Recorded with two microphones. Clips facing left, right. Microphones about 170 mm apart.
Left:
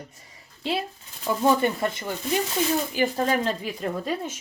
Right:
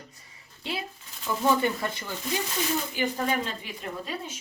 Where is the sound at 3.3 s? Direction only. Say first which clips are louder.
Left 5 dB; 40° left (ahead or behind).